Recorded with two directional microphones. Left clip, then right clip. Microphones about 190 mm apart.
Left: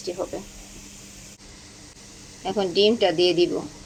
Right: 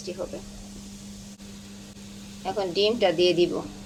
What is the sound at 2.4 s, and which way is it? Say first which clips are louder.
Speech: left 4 dB; 30° left (ahead or behind).